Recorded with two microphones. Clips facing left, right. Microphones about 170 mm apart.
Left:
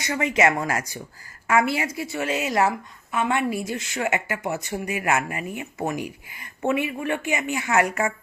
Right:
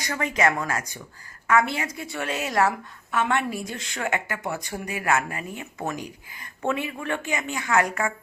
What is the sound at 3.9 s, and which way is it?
Speech, 20° left (ahead or behind).